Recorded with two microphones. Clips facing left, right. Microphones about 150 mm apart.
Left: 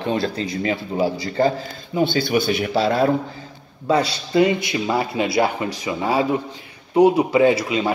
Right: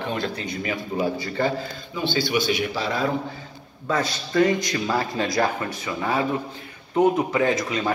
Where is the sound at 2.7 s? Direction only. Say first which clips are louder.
Left 7 dB; 60° left (ahead or behind).